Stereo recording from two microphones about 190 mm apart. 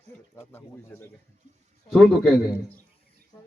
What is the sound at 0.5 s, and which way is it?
Speech, 10° left (ahead or behind).